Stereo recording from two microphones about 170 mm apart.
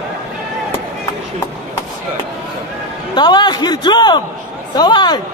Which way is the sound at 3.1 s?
25° left (ahead or behind).